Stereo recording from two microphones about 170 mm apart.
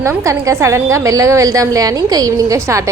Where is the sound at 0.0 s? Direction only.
15° right (ahead or behind).